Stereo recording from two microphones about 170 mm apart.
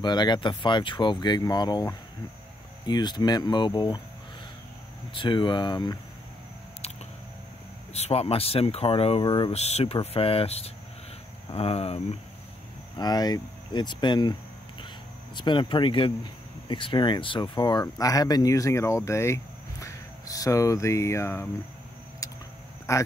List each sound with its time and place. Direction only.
0.0 s speech: 25° left (ahead or behind)
5.1 s speech: 30° left (ahead or behind)
7.9 s speech: 35° left (ahead or behind)
9.5 s speech: 40° left (ahead or behind)
12.9 s speech: 25° left (ahead or behind)
15.3 s speech: 25° left (ahead or behind)
22.2 s vehicle: 20° left (ahead or behind)
22.9 s speech: 15° left (ahead or behind)